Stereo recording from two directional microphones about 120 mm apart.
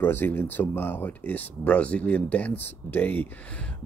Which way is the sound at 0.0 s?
20° left (ahead or behind).